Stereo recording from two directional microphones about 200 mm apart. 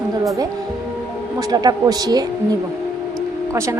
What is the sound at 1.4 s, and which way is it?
A woman's voice, 20° right (ahead or behind).